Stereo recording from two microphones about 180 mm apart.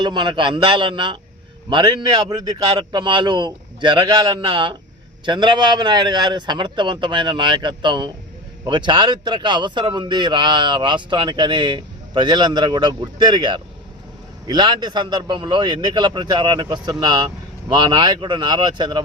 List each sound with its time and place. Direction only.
0.0 s a man's voice: 25° right (ahead or behind)